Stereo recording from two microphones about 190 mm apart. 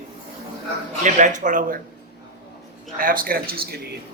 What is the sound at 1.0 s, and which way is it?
Speech, 40° right (ahead or behind).